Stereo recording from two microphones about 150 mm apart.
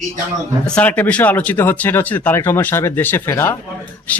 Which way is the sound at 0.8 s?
10° left (ahead or behind).